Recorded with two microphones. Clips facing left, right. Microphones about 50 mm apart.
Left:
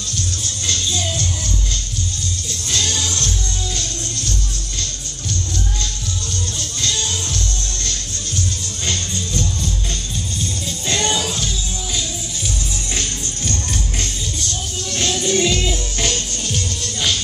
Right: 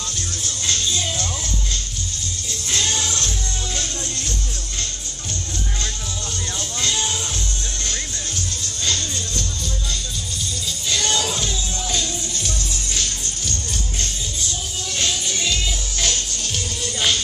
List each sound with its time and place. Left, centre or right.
2.7 s music: right
6.8 s music: right
11.2 s music: centre
15.2 s music: centre
16.4 s music: centre